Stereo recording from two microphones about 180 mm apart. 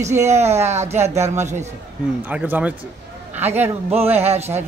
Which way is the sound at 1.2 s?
15° right (ahead or behind).